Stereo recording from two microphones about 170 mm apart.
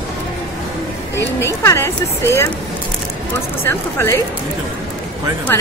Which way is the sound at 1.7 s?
15° left (ahead or behind).